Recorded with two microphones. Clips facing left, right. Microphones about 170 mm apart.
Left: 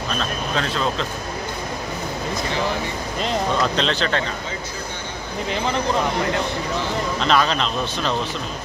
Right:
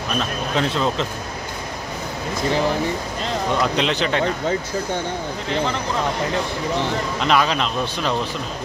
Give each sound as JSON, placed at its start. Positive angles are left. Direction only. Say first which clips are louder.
{"t": 0.2, "sound": "speech", "louder": "right 4 dB", "side_deg": -20}
{"t": 3.6, "sound": "speech", "louder": "right 1 dB", "side_deg": -15}
{"t": 7.2, "sound": "speech", "louder": "right 1 dB", "side_deg": -10}